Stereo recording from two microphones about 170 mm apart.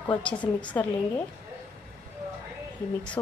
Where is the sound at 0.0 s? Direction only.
5° left (ahead or behind).